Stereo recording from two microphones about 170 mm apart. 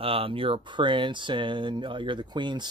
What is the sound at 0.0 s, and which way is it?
Speech, 35° right (ahead or behind).